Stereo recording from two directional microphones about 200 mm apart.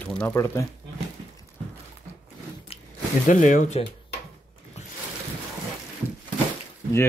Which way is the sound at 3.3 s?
40° left (ahead or behind).